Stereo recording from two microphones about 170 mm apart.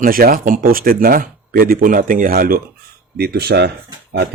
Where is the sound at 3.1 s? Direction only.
70° right (ahead or behind).